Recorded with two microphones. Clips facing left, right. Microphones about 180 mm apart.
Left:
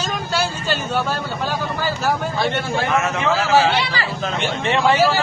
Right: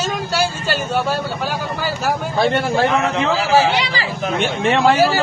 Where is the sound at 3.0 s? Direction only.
15° right (ahead or behind).